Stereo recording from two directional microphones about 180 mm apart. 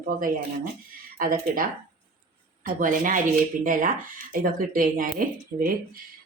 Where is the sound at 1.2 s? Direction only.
50° right (ahead or behind).